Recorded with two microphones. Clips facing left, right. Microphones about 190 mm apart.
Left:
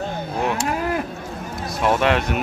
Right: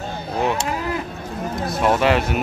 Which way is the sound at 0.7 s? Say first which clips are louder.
Left 2 dB; 55° left (ahead or behind).